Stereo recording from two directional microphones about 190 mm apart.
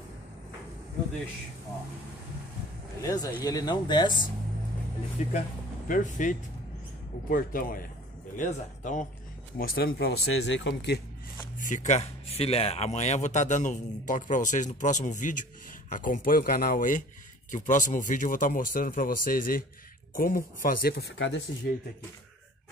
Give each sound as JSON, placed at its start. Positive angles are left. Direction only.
{"t": 3.0, "sound": "speech", "side_deg": 20}
{"t": 5.2, "sound": "speech", "side_deg": 40}
{"t": 9.6, "sound": "speech", "side_deg": 60}
{"t": 11.7, "sound": "speech", "side_deg": 40}